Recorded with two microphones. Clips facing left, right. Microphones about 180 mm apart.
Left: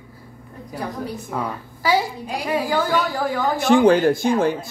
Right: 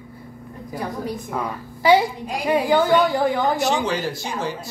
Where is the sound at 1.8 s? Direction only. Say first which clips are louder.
Right 4 dB; 25° right (ahead or behind).